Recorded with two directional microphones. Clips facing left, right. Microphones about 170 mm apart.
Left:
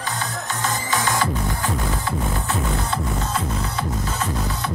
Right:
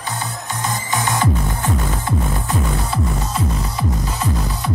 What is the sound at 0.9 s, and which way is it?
Music, 15° right (ahead or behind).